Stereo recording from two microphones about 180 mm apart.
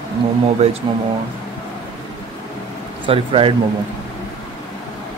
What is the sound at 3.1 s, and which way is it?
Speech, 30° right (ahead or behind).